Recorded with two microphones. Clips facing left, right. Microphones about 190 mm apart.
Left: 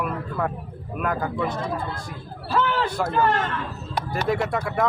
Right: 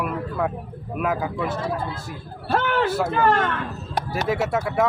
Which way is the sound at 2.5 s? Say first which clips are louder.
Even; 60° right (ahead or behind).